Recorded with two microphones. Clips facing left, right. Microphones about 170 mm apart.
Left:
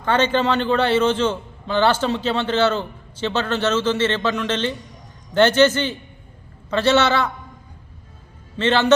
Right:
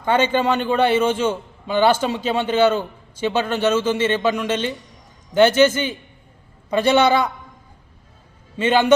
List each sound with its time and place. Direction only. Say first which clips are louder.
0.0 s a man's voice: right 1 dB; 10° right (ahead or behind)
8.5 s a man's voice: right 1 dB; 10° right (ahead or behind)